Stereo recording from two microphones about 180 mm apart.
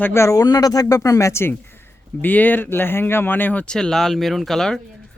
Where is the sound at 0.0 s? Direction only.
15° left (ahead or behind).